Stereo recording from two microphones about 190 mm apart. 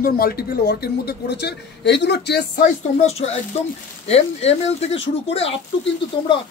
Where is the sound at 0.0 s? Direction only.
55° left (ahead or behind).